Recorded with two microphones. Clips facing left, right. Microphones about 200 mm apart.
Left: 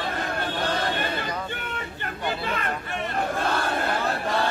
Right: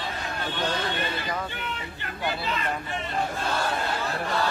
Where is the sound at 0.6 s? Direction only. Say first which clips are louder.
Left 1 dB; 55° left (ahead or behind).